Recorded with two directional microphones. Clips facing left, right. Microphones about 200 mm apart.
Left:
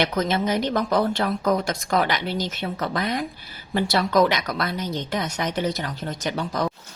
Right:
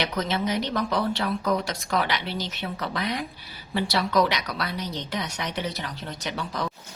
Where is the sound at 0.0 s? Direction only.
50° left (ahead or behind).